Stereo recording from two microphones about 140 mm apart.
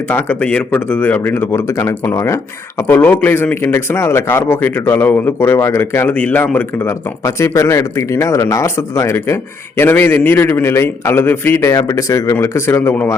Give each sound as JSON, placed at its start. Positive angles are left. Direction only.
{"t": 0.1, "sound": "a man's voice", "side_deg": 10}